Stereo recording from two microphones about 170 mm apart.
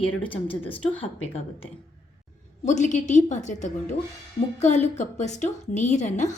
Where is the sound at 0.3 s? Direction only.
30° left (ahead or behind).